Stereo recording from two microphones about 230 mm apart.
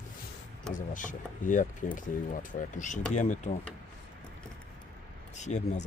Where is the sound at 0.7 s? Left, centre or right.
Left.